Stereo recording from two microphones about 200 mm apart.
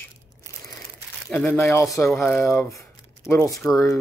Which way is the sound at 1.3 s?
5° left (ahead or behind).